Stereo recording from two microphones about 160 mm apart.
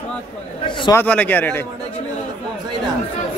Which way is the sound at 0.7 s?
30° left (ahead or behind).